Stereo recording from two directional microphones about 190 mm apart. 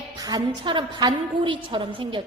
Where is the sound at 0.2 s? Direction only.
20° right (ahead or behind).